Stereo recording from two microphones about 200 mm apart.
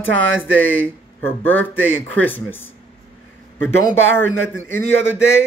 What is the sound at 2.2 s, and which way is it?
Speech, 10° left (ahead or behind).